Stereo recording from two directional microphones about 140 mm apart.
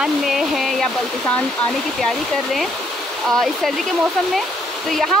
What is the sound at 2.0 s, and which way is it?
Speech, centre (ahead or behind).